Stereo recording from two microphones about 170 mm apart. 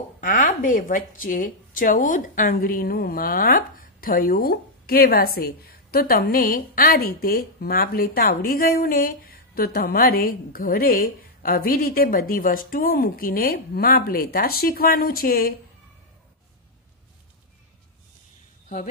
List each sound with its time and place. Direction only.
0.2 s speech: 50° left (ahead or behind)